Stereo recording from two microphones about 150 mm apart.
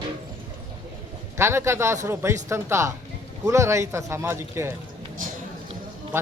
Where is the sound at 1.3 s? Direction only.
15° right (ahead or behind).